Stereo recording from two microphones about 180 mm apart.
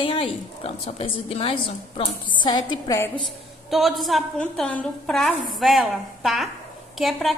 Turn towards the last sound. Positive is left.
turn(degrees=0)  # may be behind; listen again after turning